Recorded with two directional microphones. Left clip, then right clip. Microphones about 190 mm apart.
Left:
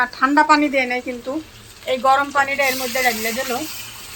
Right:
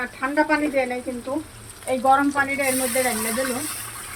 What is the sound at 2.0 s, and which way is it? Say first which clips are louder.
Speech: left 2 dB; 40° left (ahead or behind).